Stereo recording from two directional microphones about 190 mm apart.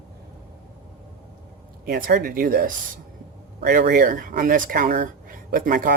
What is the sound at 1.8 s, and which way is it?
Speech, 50° right (ahead or behind).